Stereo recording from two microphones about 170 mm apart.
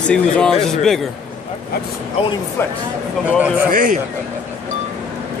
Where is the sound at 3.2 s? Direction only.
10° right (ahead or behind).